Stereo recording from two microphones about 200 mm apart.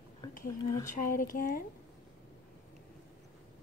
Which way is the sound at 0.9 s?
45° left (ahead or behind).